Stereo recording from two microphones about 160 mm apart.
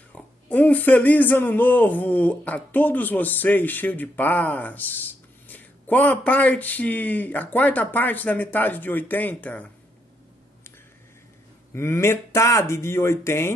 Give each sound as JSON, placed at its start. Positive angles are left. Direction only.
{"t": 0.1, "sound": "speech", "side_deg": 10}
{"t": 11.7, "sound": "speech", "side_deg": 15}